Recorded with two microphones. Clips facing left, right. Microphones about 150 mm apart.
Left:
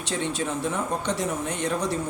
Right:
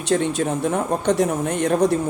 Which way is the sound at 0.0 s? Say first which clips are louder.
Right 8 dB; 50° right (ahead or behind).